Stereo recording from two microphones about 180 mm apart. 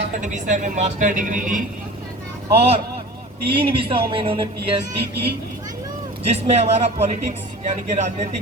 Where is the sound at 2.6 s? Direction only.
35° right (ahead or behind).